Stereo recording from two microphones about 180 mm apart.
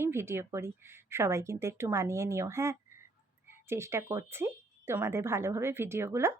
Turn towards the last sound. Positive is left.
turn(degrees=-15)  # may be behind; listen again after turning